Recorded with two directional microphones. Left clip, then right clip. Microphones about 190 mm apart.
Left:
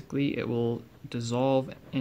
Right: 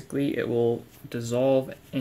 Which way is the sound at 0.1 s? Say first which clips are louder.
Right 3 dB; 20° left (ahead or behind).